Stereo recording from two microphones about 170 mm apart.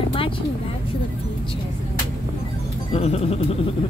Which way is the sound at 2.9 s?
35° left (ahead or behind).